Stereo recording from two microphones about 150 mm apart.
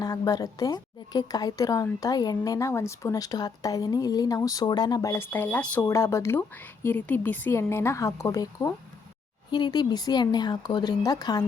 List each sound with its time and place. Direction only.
0.0 s a woman's voice: 25° left (ahead or behind)